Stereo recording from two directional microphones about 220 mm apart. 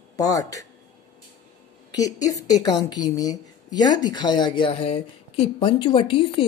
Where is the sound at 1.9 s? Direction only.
15° left (ahead or behind).